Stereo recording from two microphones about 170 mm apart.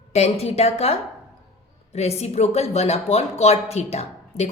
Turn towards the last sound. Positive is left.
turn(degrees=35)  # may be behind; listen again after turning